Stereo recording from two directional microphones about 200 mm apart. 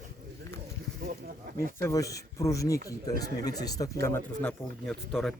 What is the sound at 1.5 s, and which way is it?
Speech, 15° left (ahead or behind).